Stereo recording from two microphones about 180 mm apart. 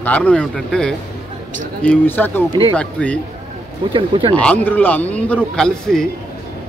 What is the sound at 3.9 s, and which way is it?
Speech, 30° right (ahead or behind).